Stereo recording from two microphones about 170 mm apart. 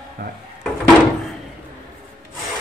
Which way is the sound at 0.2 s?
70° right (ahead or behind).